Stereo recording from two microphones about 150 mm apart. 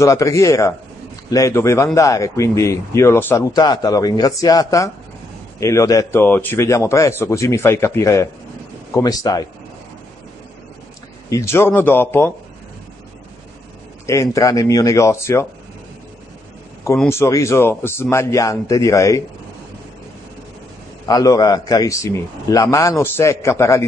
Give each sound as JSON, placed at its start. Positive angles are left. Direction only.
{"t": 0.0, "sound": "a man's voice", "side_deg": 20}
{"t": 3.5, "sound": "a man's voice", "side_deg": 25}
{"t": 11.2, "sound": "speech", "side_deg": 20}
{"t": 14.0, "sound": "a man's voice", "side_deg": 20}
{"t": 17.1, "sound": "a man's voice", "side_deg": 20}
{"t": 21.1, "sound": "a man's voice", "side_deg": 25}